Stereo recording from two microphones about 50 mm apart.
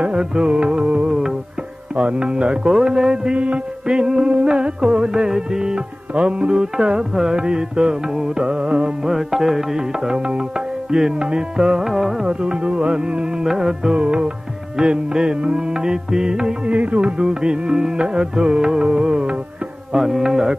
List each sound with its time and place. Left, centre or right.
0.0 s music: centre
9.1 s music: centre
12.3 s music: centre
16.7 s music: right; by 20.5 s centre